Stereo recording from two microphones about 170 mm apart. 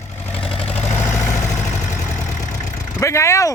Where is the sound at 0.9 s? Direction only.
15° left (ahead or behind).